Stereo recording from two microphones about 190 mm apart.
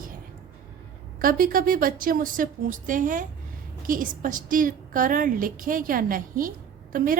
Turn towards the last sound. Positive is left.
turn(degrees=-45)  # may be behind; listen again after turning